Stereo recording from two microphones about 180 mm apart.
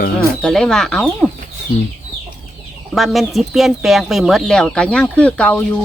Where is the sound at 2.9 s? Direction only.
Centre (ahead or behind).